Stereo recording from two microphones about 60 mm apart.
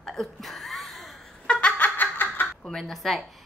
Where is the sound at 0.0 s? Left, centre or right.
Centre.